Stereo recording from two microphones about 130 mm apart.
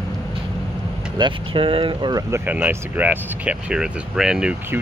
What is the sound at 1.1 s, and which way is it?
Speech, 40° right (ahead or behind).